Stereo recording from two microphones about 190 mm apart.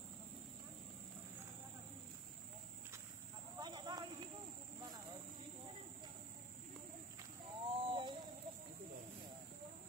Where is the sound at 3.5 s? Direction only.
20° right (ahead or behind).